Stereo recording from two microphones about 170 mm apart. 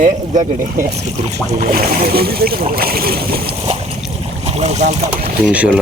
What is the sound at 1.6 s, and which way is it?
Speech, 60° right (ahead or behind).